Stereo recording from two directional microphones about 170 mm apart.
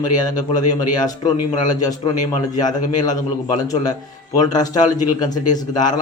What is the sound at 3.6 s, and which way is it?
A man's voice, 20° left (ahead or behind).